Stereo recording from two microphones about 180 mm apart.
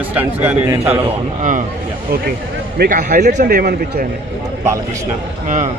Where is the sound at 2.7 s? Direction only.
60° right (ahead or behind).